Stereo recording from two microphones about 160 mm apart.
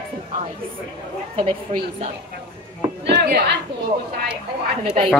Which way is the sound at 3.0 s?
70° right (ahead or behind).